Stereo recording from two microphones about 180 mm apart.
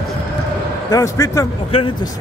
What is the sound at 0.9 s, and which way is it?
Speech, 15° left (ahead or behind).